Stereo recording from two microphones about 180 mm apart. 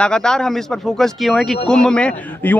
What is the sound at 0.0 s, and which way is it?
A man's voice, 5° left (ahead or behind).